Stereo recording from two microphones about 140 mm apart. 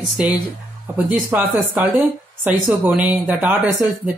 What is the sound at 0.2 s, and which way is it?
Speech, 10° right (ahead or behind).